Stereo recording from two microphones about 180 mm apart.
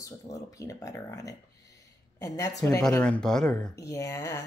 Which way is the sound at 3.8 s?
15° left (ahead or behind).